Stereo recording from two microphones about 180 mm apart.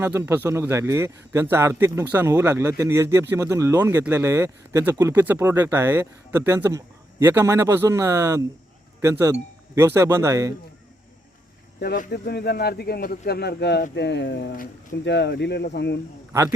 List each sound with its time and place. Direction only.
0.0 s speech: 10° right (ahead or behind)
11.8 s speech: 60° left (ahead or behind)